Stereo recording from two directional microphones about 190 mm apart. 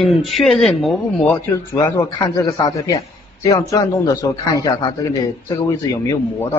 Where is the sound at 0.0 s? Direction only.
Centre (ahead or behind); by 6.6 s 15° left (ahead or behind).